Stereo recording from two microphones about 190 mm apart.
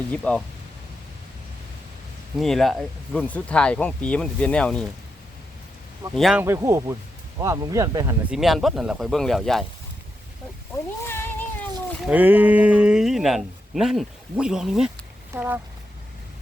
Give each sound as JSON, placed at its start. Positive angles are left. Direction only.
{"t": 0.1, "sound": "speech", "side_deg": 5}
{"t": 2.4, "sound": "speech", "side_deg": 0}
{"t": 6.1, "sound": "speech", "side_deg": 0}
{"t": 6.4, "sound": "speech", "side_deg": -15}
{"t": 8.3, "sound": "speech", "side_deg": 0}
{"t": 11.1, "sound": "cat", "side_deg": 10}
{"t": 12.0, "sound": "speech", "side_deg": -10}